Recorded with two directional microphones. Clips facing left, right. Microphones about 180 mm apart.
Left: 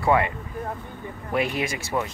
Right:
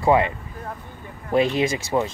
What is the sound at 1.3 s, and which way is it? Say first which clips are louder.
Speech: right 6 dB; 25° right (ahead or behind).